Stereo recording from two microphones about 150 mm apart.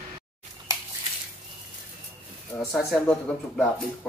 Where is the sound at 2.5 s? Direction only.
15° left (ahead or behind).